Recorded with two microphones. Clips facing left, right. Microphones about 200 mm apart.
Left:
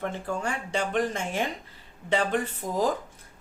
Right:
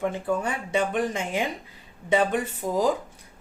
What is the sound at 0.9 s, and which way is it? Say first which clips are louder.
Speech: right 1 dB; 15° right (ahead or behind).